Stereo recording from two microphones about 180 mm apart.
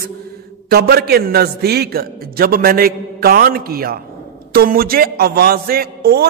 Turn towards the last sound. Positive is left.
turn(degrees=-60)  # may be behind; listen again after turning